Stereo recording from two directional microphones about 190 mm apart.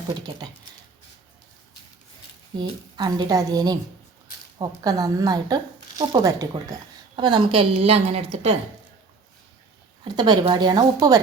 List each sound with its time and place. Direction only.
0.1 s speech: 20° right (ahead or behind)
2.6 s a woman's voice: 25° right (ahead or behind)
10.0 s speech: 20° right (ahead or behind)